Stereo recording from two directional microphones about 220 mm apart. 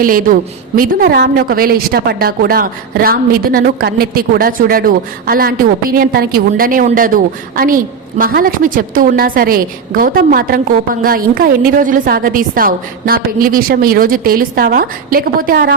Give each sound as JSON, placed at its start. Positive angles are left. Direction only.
{"t": 0.0, "sound": "a woman's voice", "side_deg": -40}